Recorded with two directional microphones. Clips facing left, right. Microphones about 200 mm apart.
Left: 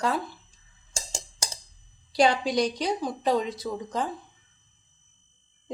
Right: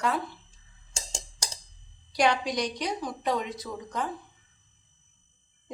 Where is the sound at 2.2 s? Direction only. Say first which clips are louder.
Left 3 dB; 30° left (ahead or behind).